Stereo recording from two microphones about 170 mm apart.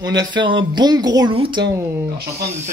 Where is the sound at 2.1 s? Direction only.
65° right (ahead or behind).